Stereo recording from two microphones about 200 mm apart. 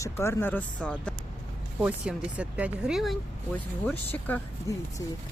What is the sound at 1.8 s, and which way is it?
Speech, 5° right (ahead or behind).